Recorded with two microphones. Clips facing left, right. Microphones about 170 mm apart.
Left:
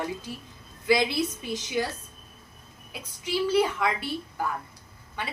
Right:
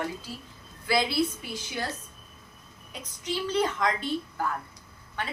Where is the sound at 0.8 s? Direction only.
20° left (ahead or behind).